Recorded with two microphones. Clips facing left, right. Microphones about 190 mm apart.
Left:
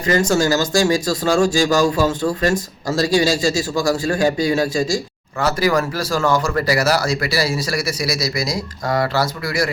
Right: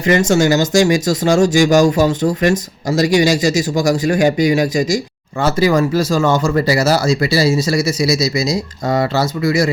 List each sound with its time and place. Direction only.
0.0 s speech: 25° right (ahead or behind)